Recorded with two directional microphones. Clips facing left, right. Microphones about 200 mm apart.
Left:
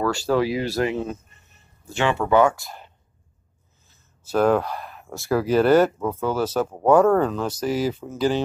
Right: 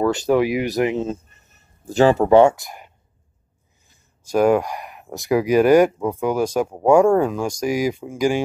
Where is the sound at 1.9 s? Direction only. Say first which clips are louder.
Right 7 dB; 35° right (ahead or behind).